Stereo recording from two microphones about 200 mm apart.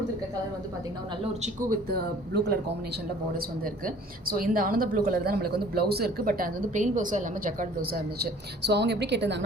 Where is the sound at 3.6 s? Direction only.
45° right (ahead or behind).